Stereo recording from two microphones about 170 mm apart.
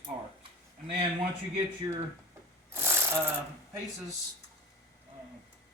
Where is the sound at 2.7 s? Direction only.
15° right (ahead or behind).